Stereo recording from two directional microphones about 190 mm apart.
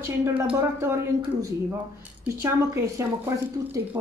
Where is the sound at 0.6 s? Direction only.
15° right (ahead or behind).